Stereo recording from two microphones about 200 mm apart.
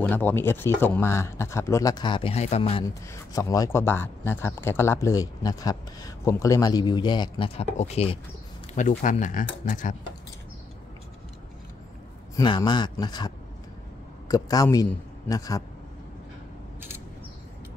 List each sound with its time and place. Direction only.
0.0 s speech: 10° left (ahead or behind); by 2.8 s 30° left (ahead or behind)
2.8 s speech: 15° left (ahead or behind); by 9.9 s 40° left (ahead or behind)
12.4 s a man's voice: 20° left (ahead or behind)